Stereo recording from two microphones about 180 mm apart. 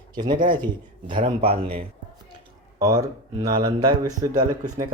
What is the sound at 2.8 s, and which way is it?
Speech, 20° right (ahead or behind).